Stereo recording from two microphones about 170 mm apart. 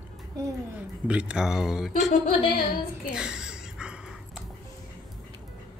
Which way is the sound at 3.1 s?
5° right (ahead or behind).